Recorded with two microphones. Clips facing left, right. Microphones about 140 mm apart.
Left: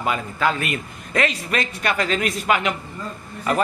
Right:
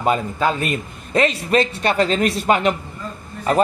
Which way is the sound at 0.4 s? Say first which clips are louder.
Right 2 dB; 25° right (ahead or behind).